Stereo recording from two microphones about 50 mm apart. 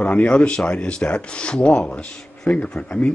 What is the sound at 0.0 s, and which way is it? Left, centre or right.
Speech, left.